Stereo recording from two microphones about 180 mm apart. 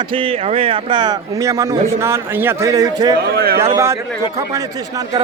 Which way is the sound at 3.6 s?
20° right (ahead or behind).